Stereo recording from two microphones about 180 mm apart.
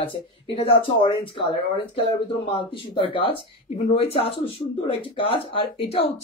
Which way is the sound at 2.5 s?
30° left (ahead or behind).